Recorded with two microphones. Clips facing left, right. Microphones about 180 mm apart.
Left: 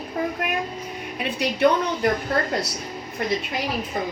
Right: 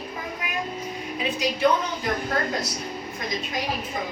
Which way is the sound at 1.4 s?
65° left (ahead or behind).